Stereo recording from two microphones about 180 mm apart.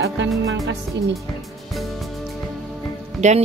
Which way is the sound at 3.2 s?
40° right (ahead or behind).